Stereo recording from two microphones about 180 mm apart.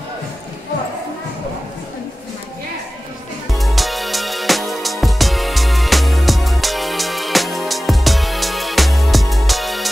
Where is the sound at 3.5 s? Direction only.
Centre (ahead or behind).